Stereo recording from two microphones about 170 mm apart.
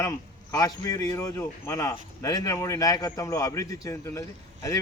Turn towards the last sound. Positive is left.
turn(degrees=20)  # may be behind; listen again after turning